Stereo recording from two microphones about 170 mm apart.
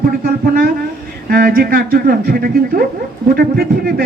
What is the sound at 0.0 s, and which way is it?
A man's voice, 60° right (ahead or behind).